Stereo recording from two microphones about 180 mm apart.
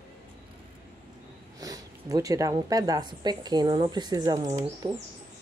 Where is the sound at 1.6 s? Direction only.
20° right (ahead or behind).